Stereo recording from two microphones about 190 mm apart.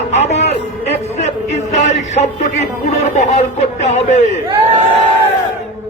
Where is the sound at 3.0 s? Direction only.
35° left (ahead or behind).